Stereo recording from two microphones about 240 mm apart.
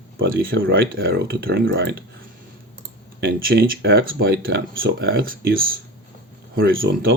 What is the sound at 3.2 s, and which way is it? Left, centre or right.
Speech, right.